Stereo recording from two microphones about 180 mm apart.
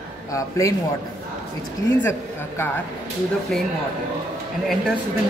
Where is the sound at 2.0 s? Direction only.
15° left (ahead or behind).